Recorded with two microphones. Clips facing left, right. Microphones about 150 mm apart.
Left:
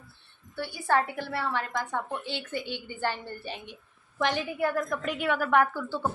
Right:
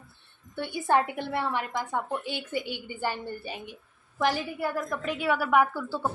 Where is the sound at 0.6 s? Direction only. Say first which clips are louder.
Right 2 dB; 20° right (ahead or behind).